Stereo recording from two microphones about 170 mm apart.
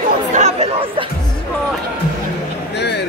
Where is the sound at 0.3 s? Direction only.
40° right (ahead or behind).